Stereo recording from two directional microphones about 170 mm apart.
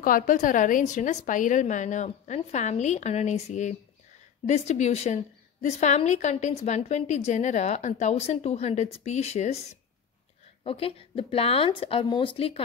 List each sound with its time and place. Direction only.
0.0 s a woman's voice: 55° left (ahead or behind)
10.6 s a woman's voice: 35° left (ahead or behind)